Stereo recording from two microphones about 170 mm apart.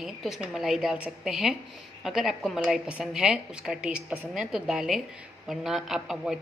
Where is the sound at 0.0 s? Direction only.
Centre (ahead or behind).